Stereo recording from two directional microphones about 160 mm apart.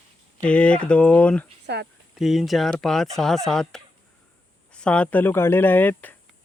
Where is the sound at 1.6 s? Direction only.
90° right.